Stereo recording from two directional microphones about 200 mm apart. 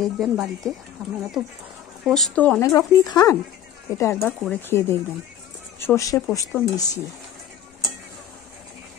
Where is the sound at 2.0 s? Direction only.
Centre (ahead or behind).